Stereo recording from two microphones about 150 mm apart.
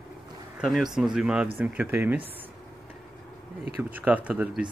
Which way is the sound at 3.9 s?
10° right (ahead or behind).